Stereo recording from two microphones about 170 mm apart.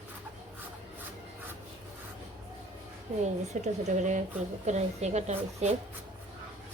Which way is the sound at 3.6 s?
45° right (ahead or behind).